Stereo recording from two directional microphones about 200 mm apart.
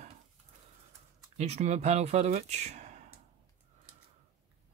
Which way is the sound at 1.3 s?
35° right (ahead or behind).